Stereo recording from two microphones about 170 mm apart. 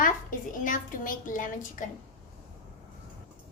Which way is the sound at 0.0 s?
50° left (ahead or behind).